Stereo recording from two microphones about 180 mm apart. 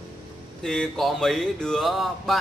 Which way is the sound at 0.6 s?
Centre (ahead or behind).